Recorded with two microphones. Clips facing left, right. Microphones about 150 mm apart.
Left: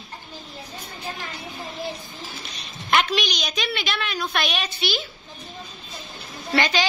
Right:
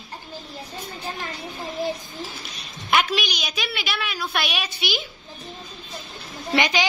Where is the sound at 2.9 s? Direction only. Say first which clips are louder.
Even; 5° right (ahead or behind).